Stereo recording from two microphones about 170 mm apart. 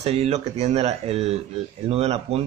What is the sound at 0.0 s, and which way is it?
Speech, 35° right (ahead or behind).